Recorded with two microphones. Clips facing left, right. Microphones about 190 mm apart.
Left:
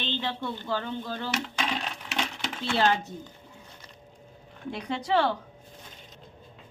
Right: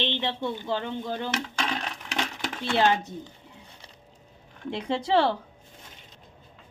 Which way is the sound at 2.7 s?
15° right (ahead or behind).